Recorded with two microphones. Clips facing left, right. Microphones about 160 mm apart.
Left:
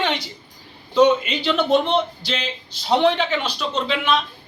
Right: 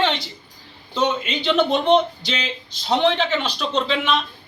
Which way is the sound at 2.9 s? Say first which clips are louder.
Left 1 dB; 10° left (ahead or behind).